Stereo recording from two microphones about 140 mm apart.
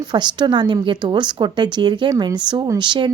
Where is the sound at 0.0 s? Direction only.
30° right (ahead or behind).